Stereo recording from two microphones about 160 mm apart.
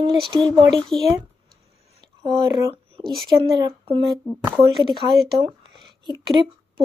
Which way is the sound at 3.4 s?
30° right (ahead or behind).